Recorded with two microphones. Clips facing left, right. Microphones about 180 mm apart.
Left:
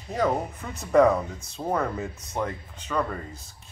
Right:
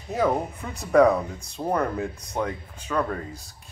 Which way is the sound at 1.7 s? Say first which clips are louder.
Right 2 dB; centre (ahead or behind).